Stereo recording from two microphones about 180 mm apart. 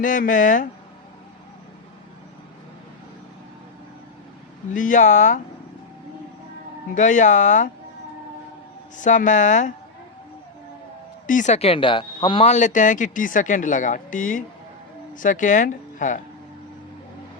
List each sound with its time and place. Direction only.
0.0 s speech: 50° left (ahead or behind)
4.7 s speech: 45° left (ahead or behind)
6.9 s speech: 45° left (ahead or behind)
9.0 s speech: 45° left (ahead or behind)
11.3 s speech: 45° left (ahead or behind)